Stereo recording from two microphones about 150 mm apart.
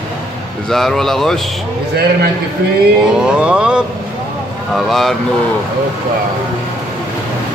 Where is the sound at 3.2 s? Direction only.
5° right (ahead or behind).